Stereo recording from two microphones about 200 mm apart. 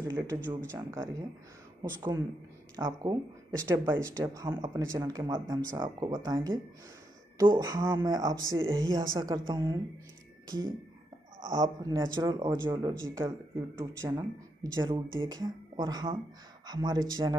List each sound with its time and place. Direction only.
0.0 s speech: 15° right (ahead or behind)
11.4 s speech: 20° right (ahead or behind)